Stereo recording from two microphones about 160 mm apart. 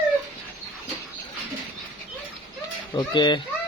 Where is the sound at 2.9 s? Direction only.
25° left (ahead or behind).